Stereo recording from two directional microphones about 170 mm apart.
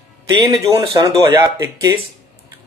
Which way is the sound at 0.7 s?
20° right (ahead or behind).